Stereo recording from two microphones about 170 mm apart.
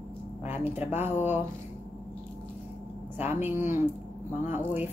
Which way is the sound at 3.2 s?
10° right (ahead or behind).